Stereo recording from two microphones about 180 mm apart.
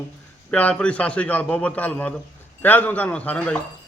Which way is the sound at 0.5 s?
5° left (ahead or behind).